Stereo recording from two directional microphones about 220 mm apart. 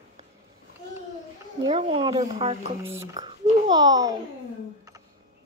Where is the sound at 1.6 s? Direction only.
25° right (ahead or behind).